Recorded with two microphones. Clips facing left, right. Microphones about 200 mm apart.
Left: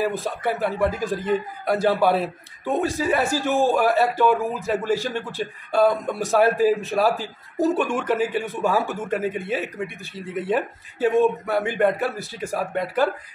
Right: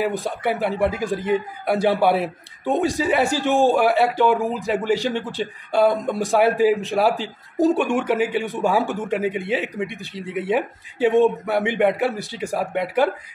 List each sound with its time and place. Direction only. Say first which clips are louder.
0.0 s a man's voice: right 1 dB; 15° right (ahead or behind)